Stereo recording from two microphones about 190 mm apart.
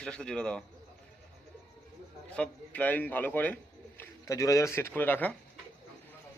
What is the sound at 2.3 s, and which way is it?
A man's voice, 5° left (ahead or behind).